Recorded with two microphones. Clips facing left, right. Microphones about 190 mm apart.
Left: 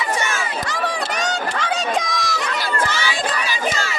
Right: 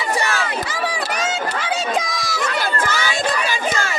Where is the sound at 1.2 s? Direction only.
Centre (ahead or behind).